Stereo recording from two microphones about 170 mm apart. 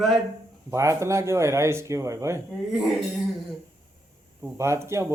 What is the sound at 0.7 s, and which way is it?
A man's voice, 15° right (ahead or behind).